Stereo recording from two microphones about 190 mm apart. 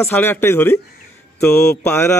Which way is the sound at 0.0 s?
10° left (ahead or behind).